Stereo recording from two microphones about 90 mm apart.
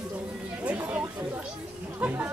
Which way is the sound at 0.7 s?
20° right (ahead or behind).